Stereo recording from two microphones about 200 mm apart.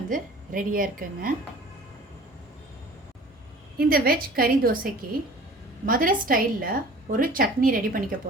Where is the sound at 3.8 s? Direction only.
50° right (ahead or behind).